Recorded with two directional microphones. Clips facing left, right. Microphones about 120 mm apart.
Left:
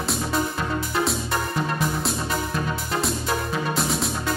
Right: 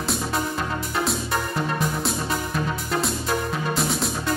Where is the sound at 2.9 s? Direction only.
Centre (ahead or behind).